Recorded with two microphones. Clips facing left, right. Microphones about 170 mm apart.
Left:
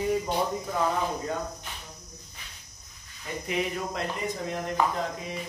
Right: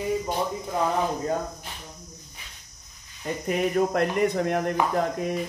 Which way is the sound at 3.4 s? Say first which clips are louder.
Right 7 dB; 50° right (ahead or behind).